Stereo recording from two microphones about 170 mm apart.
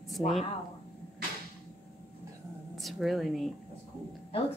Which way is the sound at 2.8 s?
Centre (ahead or behind).